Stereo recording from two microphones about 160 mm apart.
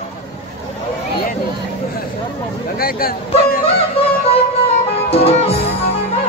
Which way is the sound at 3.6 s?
35° left (ahead or behind).